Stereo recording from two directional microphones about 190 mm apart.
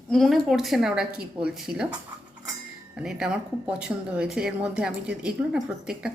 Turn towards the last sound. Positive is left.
turn(degrees=-5)  # may be behind; listen again after turning